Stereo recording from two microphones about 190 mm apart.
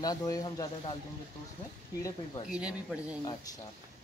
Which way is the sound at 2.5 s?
5° right (ahead or behind).